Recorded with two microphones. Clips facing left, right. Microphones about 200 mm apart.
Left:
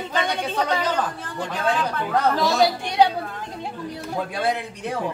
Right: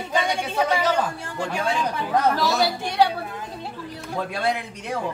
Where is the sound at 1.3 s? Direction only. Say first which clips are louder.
Left 1 dB; 10° right (ahead or behind).